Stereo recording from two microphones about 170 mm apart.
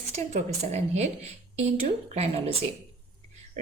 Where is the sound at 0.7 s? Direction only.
40° right (ahead or behind).